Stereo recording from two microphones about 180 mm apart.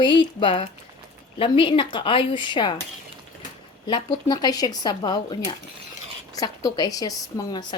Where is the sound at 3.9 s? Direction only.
25° left (ahead or behind).